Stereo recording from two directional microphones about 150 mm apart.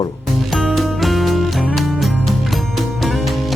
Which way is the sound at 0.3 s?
Centre (ahead or behind).